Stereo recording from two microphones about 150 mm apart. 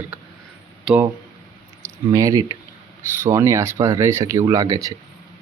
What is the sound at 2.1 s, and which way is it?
Speech, 20° right (ahead or behind).